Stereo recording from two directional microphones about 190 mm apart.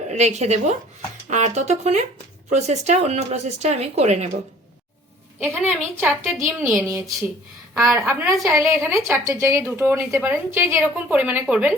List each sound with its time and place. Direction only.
0.1 s speech: 35° right (ahead or behind)
6.0 s speech: 10° right (ahead or behind)